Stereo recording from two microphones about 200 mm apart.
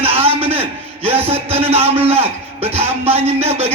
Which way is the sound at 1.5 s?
30° right (ahead or behind).